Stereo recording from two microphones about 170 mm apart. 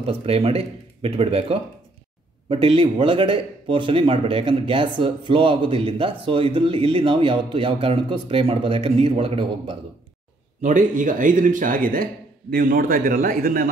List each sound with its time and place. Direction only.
0.0 s speech: 35° right (ahead or behind)
10.6 s speech: 50° right (ahead or behind)